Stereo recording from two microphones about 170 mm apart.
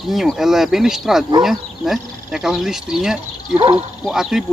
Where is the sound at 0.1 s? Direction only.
Centre (ahead or behind).